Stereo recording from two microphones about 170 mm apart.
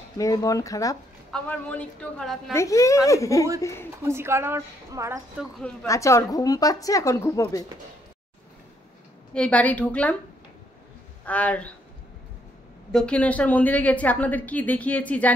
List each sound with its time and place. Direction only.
0.2 s a woman's voice: 20° left (ahead or behind)
1.3 s a woman's voice: 10° left (ahead or behind)
2.5 s a woman's voice: 20° left (ahead or behind)
4.0 s a woman's voice: 15° right (ahead or behind)
5.4 s a woman's voice: 5° left (ahead or behind)
5.9 s a woman's voice: 20° left (ahead or behind)
9.3 s a woman's voice: 5° left (ahead or behind)
11.2 s a woman's voice: 10° left (ahead or behind)
12.9 s a woman's voice: 5° left (ahead or behind)